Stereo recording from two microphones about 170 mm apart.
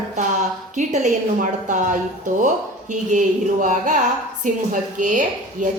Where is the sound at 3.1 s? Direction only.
50° right (ahead or behind).